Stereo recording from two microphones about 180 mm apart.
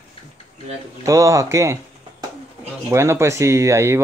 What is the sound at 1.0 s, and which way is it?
Speech, 15° right (ahead or behind).